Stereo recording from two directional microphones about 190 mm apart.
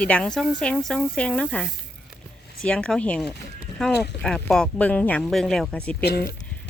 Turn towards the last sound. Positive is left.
turn(degrees=55)  # may be behind; listen again after turning